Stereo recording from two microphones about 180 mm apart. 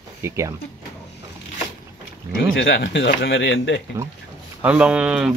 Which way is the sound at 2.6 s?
75° left (ahead or behind).